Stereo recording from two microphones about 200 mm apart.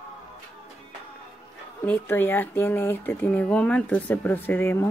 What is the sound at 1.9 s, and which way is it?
Speech, 10° left (ahead or behind).